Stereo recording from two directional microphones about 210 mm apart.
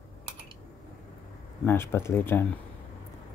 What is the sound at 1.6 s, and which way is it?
Speech, 10° left (ahead or behind).